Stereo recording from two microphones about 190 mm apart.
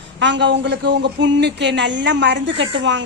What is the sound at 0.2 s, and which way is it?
A woman's voice, 70° right (ahead or behind).